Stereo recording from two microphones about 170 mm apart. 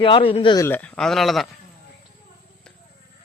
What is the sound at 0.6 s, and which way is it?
Speech, 10° left (ahead or behind).